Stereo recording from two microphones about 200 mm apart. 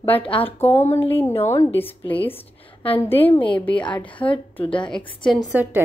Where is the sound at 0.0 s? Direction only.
25° left (ahead or behind).